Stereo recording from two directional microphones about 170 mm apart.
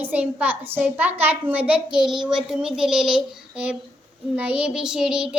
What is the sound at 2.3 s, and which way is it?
Child singing, 5° right (ahead or behind).